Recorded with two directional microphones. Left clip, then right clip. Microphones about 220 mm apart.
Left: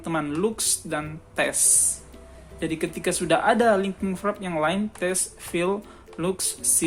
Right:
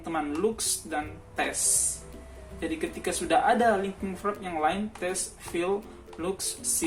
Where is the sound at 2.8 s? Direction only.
50° left (ahead or behind).